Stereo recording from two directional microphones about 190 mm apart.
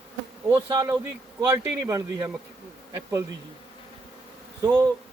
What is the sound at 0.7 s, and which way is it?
Speech, 20° right (ahead or behind).